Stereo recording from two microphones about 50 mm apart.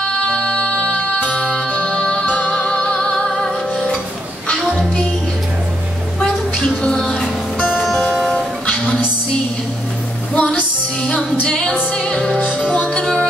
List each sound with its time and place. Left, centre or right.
0.3 s music: centre
2.3 s music: left
2.7 s music: centre
6.8 s music: centre
8.3 s music: centre
10.3 s music: left
13.0 s music: centre